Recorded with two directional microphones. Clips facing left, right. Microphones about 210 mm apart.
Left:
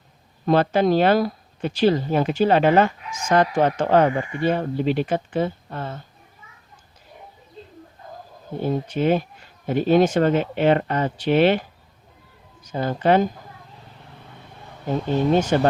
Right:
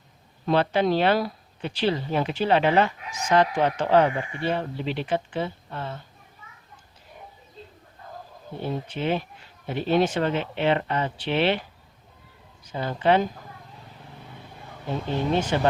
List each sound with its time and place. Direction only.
0.4 s speech: 45° left (ahead or behind)
8.6 s speech: 45° left (ahead or behind)
12.6 s speech: 45° left (ahead or behind)
15.5 s speech: 45° left (ahead or behind)